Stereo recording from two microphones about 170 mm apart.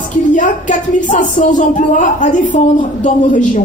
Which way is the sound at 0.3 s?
50° left (ahead or behind).